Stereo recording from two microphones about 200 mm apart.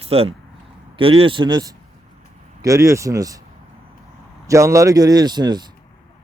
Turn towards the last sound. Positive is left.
turn(degrees=-20)  # may be behind; listen again after turning